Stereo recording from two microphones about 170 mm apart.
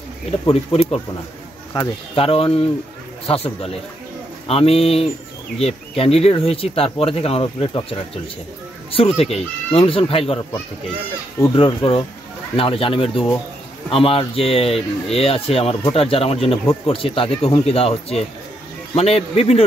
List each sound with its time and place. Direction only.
0.5 s speech: 35° left (ahead or behind)
8.9 s speech: 35° left (ahead or behind)
11.5 s speech: 30° left (ahead or behind)